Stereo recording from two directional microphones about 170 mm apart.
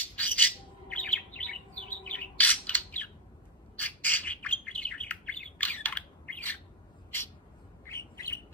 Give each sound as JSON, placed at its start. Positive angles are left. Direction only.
{"t": 0.0, "sound": "bird", "side_deg": 10}
{"t": 7.8, "sound": "bird", "side_deg": 15}